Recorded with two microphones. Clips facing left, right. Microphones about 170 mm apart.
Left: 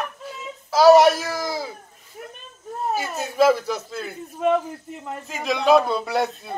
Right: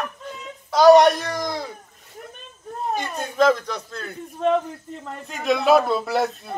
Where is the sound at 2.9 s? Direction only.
5° left (ahead or behind).